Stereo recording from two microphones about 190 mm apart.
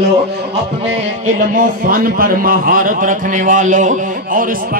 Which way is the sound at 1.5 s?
45° right (ahead or behind).